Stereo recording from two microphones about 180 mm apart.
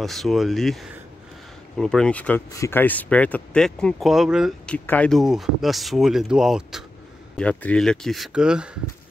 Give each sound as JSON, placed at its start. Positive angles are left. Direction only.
{"t": 0.0, "sound": "speech", "side_deg": 0}